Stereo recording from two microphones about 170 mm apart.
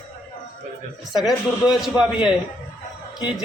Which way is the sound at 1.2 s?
Centre (ahead or behind).